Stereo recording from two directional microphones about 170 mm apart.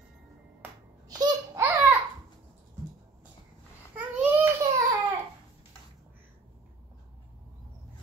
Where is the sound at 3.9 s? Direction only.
10° right (ahead or behind).